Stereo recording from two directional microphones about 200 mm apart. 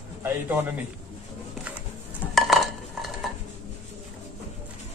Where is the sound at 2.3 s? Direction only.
Centre (ahead or behind).